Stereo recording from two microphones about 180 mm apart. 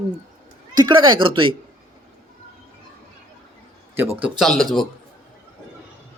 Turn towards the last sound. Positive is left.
turn(degrees=0)  # may be behind; listen again after turning